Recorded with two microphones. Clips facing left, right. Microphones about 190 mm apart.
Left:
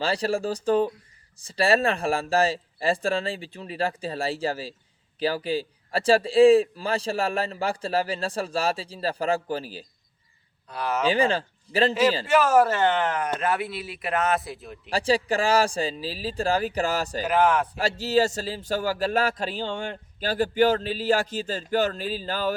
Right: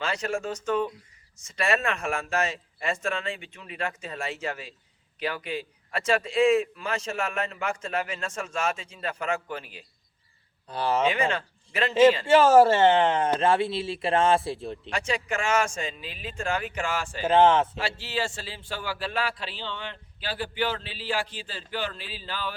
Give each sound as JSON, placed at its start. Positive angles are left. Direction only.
{"t": 0.0, "sound": "a man's voice", "side_deg": 35}
{"t": 10.7, "sound": "a man's voice", "side_deg": -30}
{"t": 11.0, "sound": "a man's voice", "side_deg": 30}
{"t": 12.2, "sound": "a man's voice", "side_deg": -25}
{"t": 14.8, "sound": "a man's voice", "side_deg": 35}
{"t": 17.2, "sound": "a man's voice", "side_deg": -25}
{"t": 17.7, "sound": "speech", "side_deg": 40}